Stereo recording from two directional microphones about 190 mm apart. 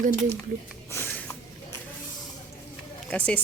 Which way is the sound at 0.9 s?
10° left (ahead or behind).